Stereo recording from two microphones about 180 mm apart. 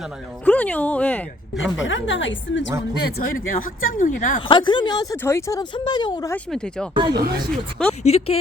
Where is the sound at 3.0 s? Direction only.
50° left (ahead or behind).